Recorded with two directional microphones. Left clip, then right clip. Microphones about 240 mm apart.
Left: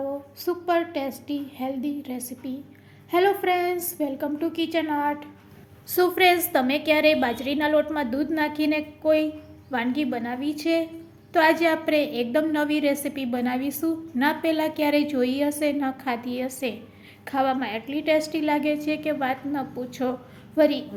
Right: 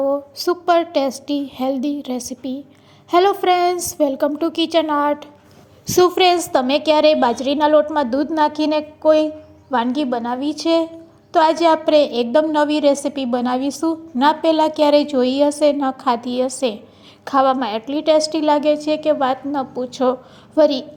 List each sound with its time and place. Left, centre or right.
0.4 s a woman's voice: right
9.8 s a woman's voice: right